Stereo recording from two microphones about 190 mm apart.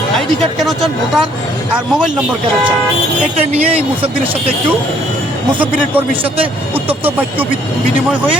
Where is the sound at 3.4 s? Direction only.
30° right (ahead or behind).